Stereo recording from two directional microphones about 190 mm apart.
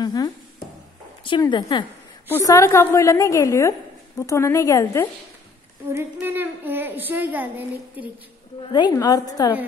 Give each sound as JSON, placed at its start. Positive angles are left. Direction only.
{"t": 0.0, "sound": "a sound", "side_deg": 20}
{"t": 1.2, "sound": "a woman's voice", "side_deg": 25}
{"t": 2.2, "sound": "a woman's voice", "side_deg": 15}
{"t": 5.9, "sound": "a woman's voice", "side_deg": -10}
{"t": 8.7, "sound": "a woman's voice", "side_deg": 20}